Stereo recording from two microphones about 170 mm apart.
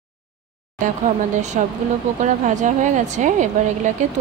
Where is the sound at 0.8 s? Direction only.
45° right (ahead or behind).